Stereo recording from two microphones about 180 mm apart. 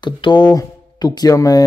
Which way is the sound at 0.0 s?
25° left (ahead or behind).